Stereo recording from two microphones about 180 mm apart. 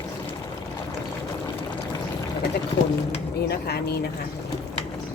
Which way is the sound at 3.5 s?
65° left (ahead or behind).